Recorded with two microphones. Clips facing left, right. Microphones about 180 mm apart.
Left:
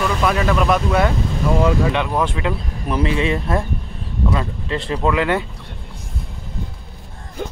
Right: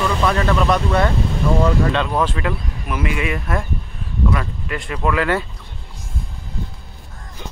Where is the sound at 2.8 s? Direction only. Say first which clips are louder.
Left 4 dB; 30° left (ahead or behind).